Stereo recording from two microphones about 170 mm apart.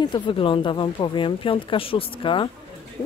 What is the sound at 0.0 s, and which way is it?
A woman's voice, 30° left (ahead or behind).